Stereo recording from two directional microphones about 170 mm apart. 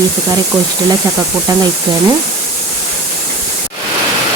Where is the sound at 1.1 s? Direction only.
20° right (ahead or behind).